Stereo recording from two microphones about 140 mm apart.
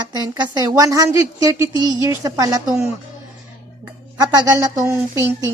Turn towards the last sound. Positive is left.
turn(degrees=-20)  # may be behind; listen again after turning